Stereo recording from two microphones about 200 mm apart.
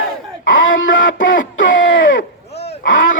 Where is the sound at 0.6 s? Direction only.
70° left (ahead or behind).